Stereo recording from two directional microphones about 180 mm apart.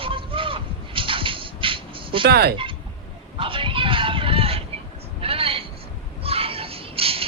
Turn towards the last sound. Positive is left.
turn(degrees=-30)  # may be behind; listen again after turning